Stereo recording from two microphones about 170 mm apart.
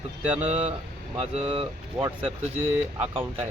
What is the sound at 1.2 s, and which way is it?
Speech, 35° right (ahead or behind).